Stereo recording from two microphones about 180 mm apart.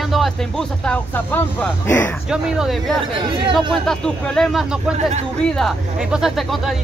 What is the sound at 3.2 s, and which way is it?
Speech, 30° right (ahead or behind).